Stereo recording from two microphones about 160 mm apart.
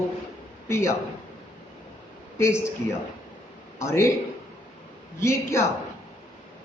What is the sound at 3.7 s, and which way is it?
Speech, 15° left (ahead or behind).